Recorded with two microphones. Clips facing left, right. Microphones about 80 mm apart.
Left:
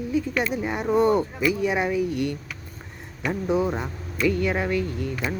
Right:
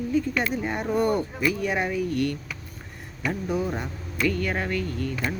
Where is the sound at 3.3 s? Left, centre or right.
Left.